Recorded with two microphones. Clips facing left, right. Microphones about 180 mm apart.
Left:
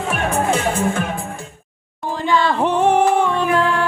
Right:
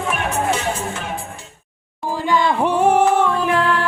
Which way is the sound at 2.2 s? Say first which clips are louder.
Even; 15° right (ahead or behind).